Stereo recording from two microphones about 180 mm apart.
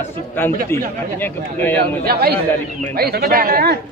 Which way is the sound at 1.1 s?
10° left (ahead or behind).